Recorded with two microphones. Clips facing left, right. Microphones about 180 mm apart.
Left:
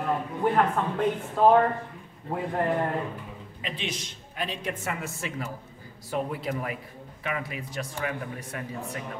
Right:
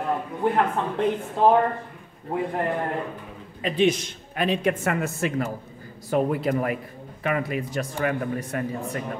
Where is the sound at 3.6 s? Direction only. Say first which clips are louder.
Right 14 dB; 45° right (ahead or behind).